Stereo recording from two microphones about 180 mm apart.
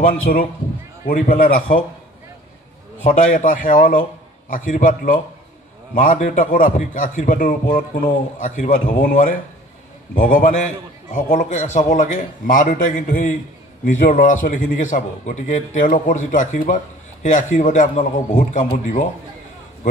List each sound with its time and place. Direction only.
0.0 s a man's voice: 50° left (ahead or behind)
3.0 s a man's voice: 45° left (ahead or behind)